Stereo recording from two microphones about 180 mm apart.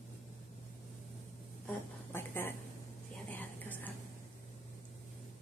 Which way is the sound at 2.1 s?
10° left (ahead or behind).